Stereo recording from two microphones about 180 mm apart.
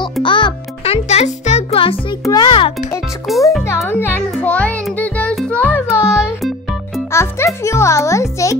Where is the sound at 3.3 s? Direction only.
Centre (ahead or behind).